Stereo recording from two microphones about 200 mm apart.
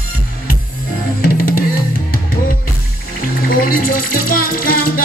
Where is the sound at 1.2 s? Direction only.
50° left (ahead or behind).